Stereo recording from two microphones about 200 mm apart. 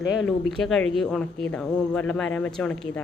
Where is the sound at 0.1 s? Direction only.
Centre (ahead or behind).